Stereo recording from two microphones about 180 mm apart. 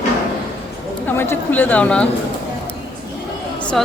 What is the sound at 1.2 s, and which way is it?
Speech, 10° left (ahead or behind).